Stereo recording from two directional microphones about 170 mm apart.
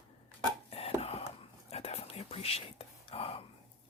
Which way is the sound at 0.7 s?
35° left (ahead or behind).